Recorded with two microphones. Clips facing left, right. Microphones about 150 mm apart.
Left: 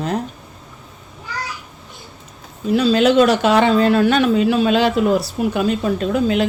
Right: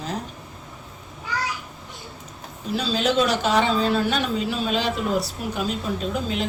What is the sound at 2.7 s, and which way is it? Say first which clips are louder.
Speech: left 9 dB; 65° left (ahead or behind).